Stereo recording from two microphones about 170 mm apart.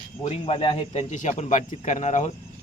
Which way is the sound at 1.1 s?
45° left (ahead or behind).